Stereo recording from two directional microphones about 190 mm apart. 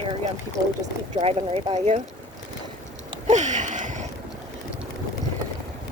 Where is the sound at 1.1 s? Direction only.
35° right (ahead or behind).